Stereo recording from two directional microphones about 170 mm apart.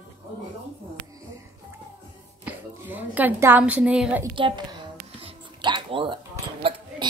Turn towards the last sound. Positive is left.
turn(degrees=-30)  # may be behind; listen again after turning